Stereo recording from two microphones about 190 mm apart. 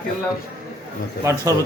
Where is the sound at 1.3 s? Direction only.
15° right (ahead or behind).